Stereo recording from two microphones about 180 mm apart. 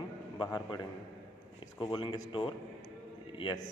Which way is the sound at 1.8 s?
25° left (ahead or behind).